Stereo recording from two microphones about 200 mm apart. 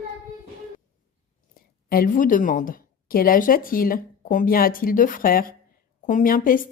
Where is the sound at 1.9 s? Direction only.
45° left (ahead or behind).